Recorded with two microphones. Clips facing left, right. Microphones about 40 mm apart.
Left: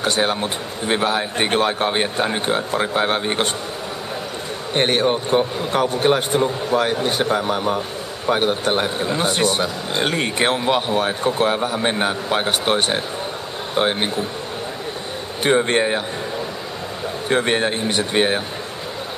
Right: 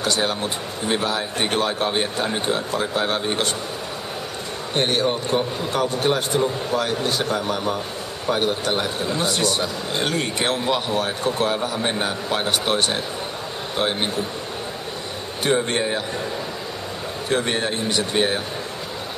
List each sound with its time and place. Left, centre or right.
0.0 s a man's voice: left
4.7 s a man's voice: left
15.4 s a man's voice: left
17.3 s a man's voice: left